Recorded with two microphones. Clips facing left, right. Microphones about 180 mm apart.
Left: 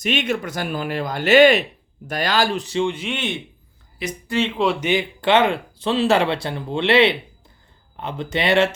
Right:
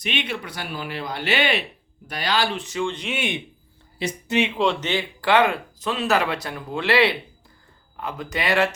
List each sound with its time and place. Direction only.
0.0 s speech: 45° left (ahead or behind)
3.0 s speech: 5° right (ahead or behind)
3.9 s a woman's voice: 30° right (ahead or behind)
4.5 s speech: 5° left (ahead or behind); by 8.7 s 25° left (ahead or behind)